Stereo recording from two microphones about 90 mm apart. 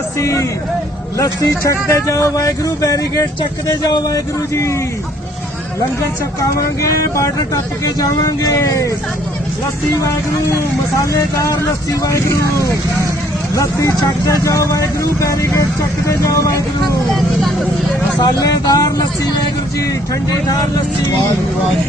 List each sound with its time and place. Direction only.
0.2 s speech: 35° left (ahead or behind)
1.9 s speech: 35° left (ahead or behind)
4.5 s speech: 30° left (ahead or behind)
6.4 s speech: 35° left (ahead or behind)
11.0 s speech: 35° left (ahead or behind)
18.2 s speech: 45° left (ahead or behind)